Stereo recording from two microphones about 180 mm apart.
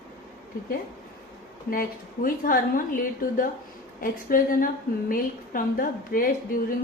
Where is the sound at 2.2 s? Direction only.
50° left (ahead or behind).